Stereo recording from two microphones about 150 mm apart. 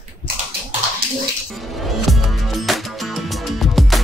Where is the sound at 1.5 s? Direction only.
Centre (ahead or behind).